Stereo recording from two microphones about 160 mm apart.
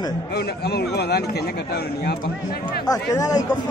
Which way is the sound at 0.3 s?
90° left.